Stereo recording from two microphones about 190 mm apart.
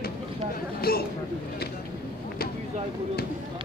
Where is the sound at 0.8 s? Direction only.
55° left (ahead or behind).